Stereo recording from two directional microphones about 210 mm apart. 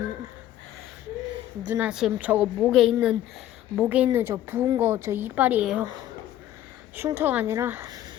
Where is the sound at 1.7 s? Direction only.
5° right (ahead or behind).